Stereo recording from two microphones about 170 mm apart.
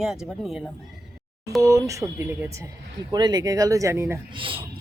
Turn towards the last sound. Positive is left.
turn(degrees=-30)  # may be behind; listen again after turning